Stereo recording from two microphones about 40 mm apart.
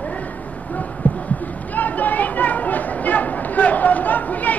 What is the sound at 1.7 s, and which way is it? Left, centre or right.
Chatter, left.